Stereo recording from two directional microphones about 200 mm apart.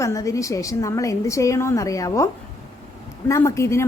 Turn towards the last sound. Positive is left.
turn(degrees=15)  # may be behind; listen again after turning